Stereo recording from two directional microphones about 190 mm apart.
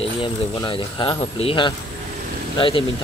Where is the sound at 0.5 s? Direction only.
25° left (ahead or behind).